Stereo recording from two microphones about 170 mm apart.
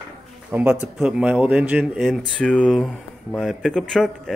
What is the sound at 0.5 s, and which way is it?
Speech, 10° right (ahead or behind).